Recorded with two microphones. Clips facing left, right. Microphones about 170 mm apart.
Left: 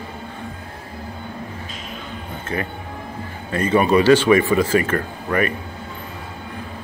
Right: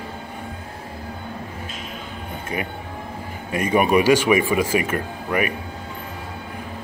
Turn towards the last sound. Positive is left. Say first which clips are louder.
# left 2 dB
turn(degrees=-10)  # may be behind; listen again after turning